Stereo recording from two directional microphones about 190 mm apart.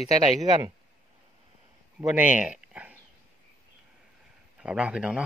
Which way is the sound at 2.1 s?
5° right (ahead or behind).